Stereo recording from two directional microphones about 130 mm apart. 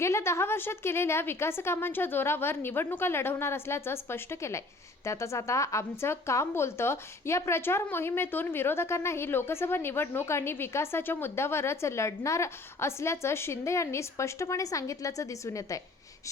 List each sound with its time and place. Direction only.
0.0 s speech: 20° left (ahead or behind)